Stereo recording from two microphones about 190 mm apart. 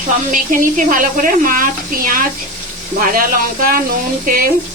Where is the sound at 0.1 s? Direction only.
45° right (ahead or behind).